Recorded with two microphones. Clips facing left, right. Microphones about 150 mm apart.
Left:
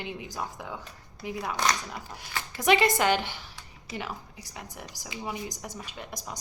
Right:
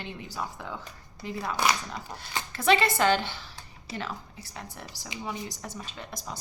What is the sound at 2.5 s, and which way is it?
A woman's voice, 15° left (ahead or behind).